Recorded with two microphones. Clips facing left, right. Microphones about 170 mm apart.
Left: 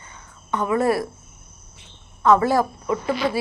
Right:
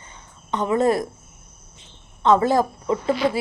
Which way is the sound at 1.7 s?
25° right (ahead or behind).